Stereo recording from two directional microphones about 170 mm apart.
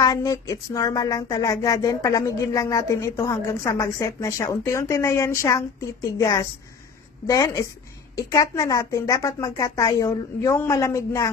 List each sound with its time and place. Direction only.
0.0 s music: 20° left (ahead or behind)